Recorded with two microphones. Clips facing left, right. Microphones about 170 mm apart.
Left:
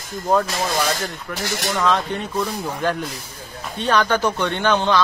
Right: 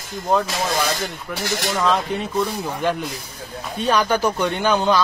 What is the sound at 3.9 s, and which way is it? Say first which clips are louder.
Speech: even; 10° right (ahead or behind).